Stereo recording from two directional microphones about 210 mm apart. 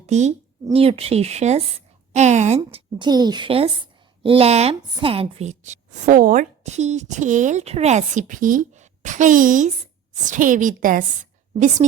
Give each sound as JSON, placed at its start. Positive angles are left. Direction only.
{"t": 0.1, "sound": "a woman's voice", "side_deg": -30}